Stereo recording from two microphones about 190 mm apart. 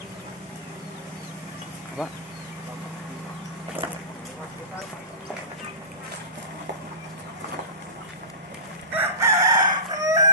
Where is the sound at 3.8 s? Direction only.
25° right (ahead or behind).